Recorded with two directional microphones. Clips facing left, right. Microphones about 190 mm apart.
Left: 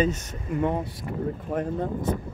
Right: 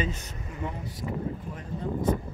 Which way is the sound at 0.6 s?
60° left (ahead or behind).